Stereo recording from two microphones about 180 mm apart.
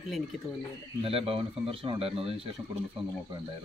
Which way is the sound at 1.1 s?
30° right (ahead or behind).